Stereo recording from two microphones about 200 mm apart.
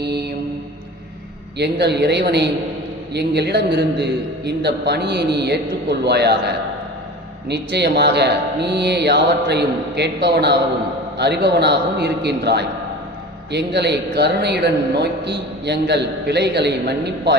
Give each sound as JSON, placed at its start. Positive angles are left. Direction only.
{"t": 0.0, "sound": "mantra", "side_deg": -55}
{"t": 1.5, "sound": "a man's voice", "side_deg": -55}
{"t": 7.4, "sound": "a man's voice", "side_deg": -55}